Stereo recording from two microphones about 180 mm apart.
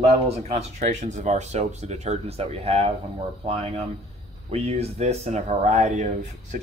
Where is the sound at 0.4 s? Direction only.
40° right (ahead or behind).